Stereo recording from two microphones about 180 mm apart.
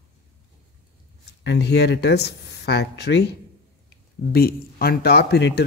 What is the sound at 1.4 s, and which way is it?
Speech, 70° left (ahead or behind).